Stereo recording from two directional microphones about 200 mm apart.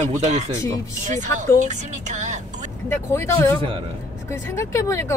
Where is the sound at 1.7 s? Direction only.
35° right (ahead or behind).